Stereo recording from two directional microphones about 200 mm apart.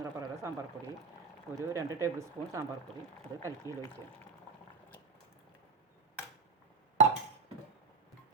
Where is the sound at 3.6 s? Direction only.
15° left (ahead or behind).